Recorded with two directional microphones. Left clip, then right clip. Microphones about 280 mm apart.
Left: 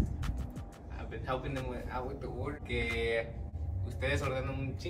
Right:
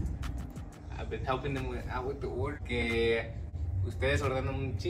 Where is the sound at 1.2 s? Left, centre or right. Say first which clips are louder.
Right 2 dB; centre.